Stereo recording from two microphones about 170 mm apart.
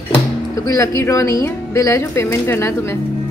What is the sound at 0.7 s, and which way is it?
A woman's voice, 15° left (ahead or behind).